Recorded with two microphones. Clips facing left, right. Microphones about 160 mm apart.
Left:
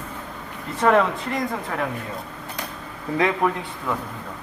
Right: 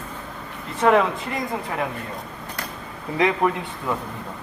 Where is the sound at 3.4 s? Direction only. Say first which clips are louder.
Right 1 dB; centre (ahead or behind).